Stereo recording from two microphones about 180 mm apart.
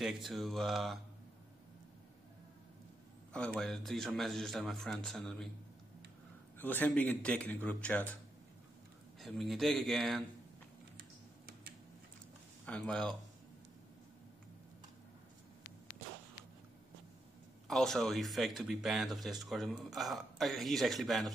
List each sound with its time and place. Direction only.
0.0 s speech: centre (ahead or behind)
3.3 s speech: 5° left (ahead or behind)
6.6 s a man's voice: 10° left (ahead or behind)
9.2 s speech: centre (ahead or behind)
11.0 s typing: 60° right (ahead or behind)
12.6 s speech: 5° left (ahead or behind)
17.6 s speech: centre (ahead or behind)